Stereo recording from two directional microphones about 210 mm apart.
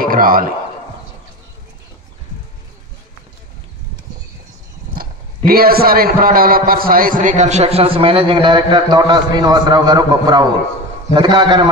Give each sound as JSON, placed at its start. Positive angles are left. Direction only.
{"t": 0.0, "sound": "a man's voice", "side_deg": -40}
{"t": 4.9, "sound": "a man's voice", "side_deg": -45}